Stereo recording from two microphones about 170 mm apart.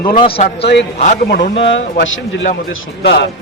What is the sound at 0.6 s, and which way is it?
Speech, 90° left.